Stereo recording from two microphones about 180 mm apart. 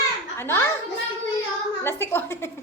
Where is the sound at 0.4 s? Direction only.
10° left (ahead or behind).